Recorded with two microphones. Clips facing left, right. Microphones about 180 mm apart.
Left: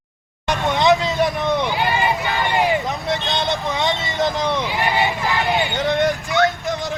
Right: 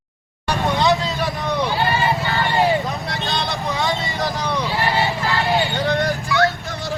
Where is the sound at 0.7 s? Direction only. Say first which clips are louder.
Left 5 dB; 20° left (ahead or behind).